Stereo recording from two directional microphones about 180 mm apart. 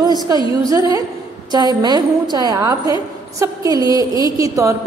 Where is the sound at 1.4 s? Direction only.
25° right (ahead or behind).